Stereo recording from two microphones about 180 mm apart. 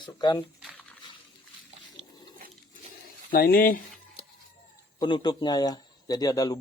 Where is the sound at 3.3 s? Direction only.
55° left (ahead or behind).